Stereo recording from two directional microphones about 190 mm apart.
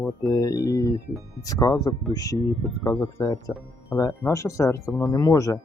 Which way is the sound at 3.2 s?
20° left (ahead or behind).